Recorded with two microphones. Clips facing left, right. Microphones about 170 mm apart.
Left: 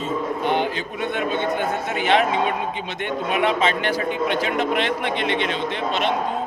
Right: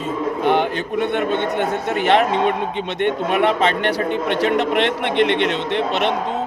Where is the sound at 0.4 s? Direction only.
60° right (ahead or behind).